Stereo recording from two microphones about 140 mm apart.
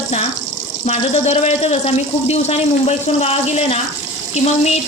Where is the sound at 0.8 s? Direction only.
50° left (ahead or behind).